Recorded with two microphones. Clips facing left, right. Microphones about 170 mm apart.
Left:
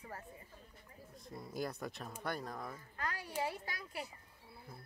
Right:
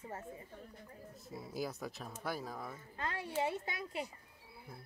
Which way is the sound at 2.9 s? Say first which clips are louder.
Right 3 dB; 25° right (ahead or behind).